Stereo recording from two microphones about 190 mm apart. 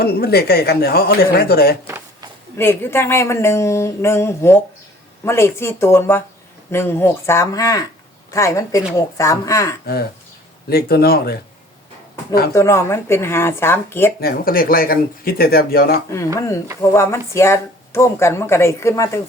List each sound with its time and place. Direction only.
0.0 s speech: 55° left (ahead or behind)
2.6 s speech: 15° left (ahead or behind)
9.8 s speech: 55° left (ahead or behind)
12.5 s speech: 15° left (ahead or behind)
14.2 s speech: 50° left (ahead or behind)
16.1 s speech: 15° left (ahead or behind)